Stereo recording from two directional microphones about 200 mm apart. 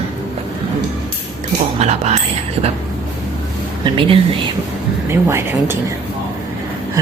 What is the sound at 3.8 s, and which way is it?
Speech, 25° right (ahead or behind).